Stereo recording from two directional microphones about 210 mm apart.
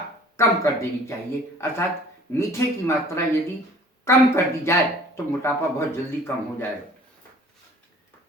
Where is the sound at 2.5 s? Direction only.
15° left (ahead or behind).